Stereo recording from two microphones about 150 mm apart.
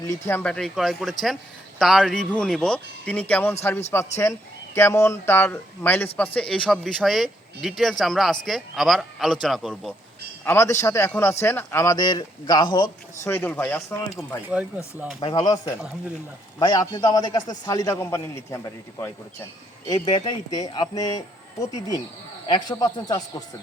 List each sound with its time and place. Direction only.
0.3 s speech: 10° left (ahead or behind)
10.4 s speech: 15° left (ahead or behind)
13.3 s speech: 15° left (ahead or behind)
14.4 s speech: 10° right (ahead or behind)
15.2 s speech: 30° left (ahead or behind)
19.9 s speech: 30° left (ahead or behind)